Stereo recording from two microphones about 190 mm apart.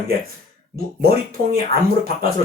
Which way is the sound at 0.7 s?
50° right (ahead or behind).